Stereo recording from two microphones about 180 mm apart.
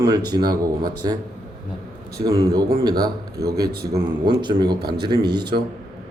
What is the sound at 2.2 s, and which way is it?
Speech, 20° right (ahead or behind).